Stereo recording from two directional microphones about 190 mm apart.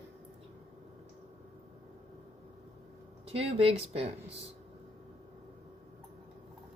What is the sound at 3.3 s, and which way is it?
Speech, 30° right (ahead or behind).